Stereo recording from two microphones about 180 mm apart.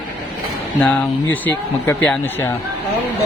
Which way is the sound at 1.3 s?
10° left (ahead or behind).